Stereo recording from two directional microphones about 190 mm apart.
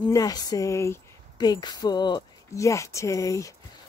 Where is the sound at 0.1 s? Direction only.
20° left (ahead or behind).